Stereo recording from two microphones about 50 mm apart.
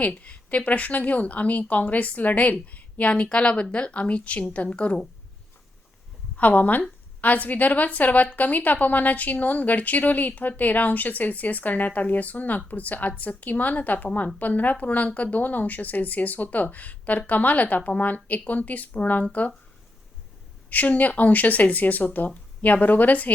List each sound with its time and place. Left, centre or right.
0.0 s speech: left
6.3 s speech: left
20.7 s speech: left